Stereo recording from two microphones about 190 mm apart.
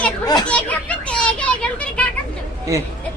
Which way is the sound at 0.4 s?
5° left (ahead or behind).